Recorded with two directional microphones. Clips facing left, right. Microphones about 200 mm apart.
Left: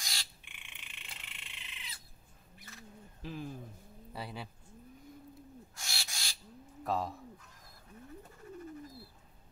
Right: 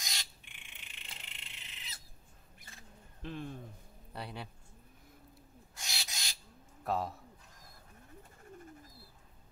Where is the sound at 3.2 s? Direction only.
5° left (ahead or behind).